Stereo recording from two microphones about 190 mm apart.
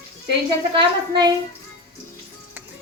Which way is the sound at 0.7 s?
25° right (ahead or behind).